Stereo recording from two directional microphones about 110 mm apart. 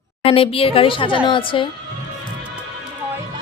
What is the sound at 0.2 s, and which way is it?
Speech, 60° left (ahead or behind).